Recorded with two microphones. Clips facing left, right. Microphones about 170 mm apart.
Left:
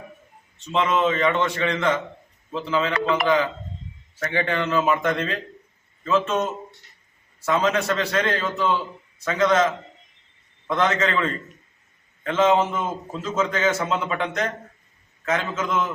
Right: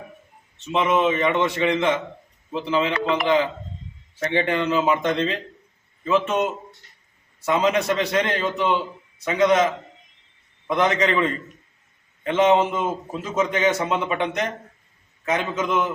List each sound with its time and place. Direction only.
0.6 s a man's voice: 15° right (ahead or behind)